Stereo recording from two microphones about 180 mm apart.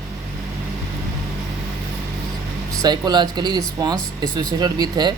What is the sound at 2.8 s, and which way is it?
Speech, 25° right (ahead or behind).